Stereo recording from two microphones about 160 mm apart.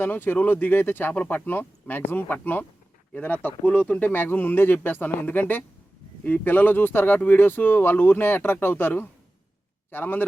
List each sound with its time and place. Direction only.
0.0 s speech: 15° left (ahead or behind)
3.7 s speech: 10° left (ahead or behind)